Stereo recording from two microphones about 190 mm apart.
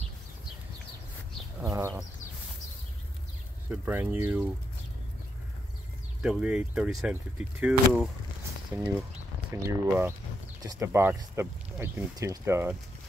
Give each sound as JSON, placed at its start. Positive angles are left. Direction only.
{"t": 1.6, "sound": "goat", "side_deg": -15}
{"t": 3.7, "sound": "speech", "side_deg": -10}
{"t": 6.2, "sound": "speech", "side_deg": -5}
{"t": 8.7, "sound": "speech", "side_deg": -15}